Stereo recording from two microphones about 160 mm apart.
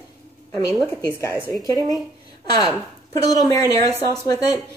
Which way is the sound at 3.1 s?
25° left (ahead or behind).